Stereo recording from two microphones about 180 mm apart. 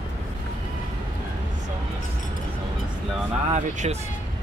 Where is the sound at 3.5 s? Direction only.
35° right (ahead or behind).